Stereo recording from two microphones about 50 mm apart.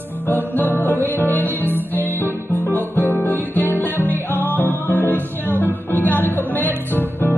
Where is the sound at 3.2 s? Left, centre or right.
Left.